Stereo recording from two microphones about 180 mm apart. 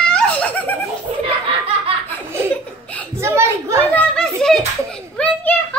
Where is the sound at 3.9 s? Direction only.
5° left (ahead or behind).